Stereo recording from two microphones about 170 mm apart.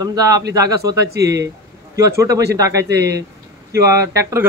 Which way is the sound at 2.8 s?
75° right (ahead or behind).